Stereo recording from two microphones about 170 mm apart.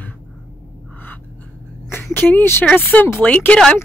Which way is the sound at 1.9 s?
10° left (ahead or behind).